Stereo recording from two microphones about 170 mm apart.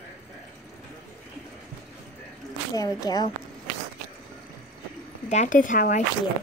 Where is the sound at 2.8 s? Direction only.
20° left (ahead or behind).